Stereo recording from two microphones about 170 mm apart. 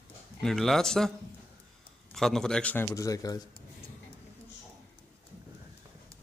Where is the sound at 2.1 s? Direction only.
Centre (ahead or behind); by 3.3 s 20° left (ahead or behind).